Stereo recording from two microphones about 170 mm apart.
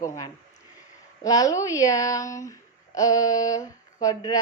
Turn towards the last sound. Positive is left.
turn(degrees=20)  # may be behind; listen again after turning